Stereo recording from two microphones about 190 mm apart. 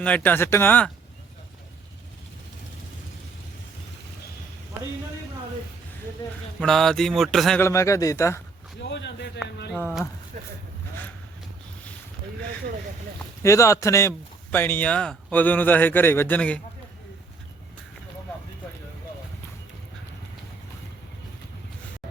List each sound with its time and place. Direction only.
0.0 s speech: 10° left (ahead or behind)
6.6 s a sound: centre (ahead or behind)
7.6 s speech: 15° left (ahead or behind)
8.8 s a man's voice: 65° left (ahead or behind)
10.3 s speech: 40° right (ahead or behind)
13.4 s speech: 15° left (ahead or behind)